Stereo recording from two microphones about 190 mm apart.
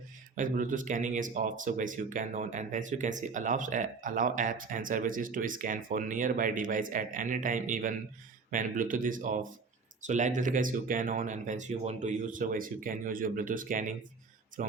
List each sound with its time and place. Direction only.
0.3 s speech: 45° right (ahead or behind)